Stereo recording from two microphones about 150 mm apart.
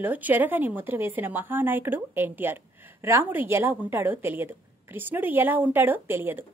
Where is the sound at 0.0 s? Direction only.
10° right (ahead or behind).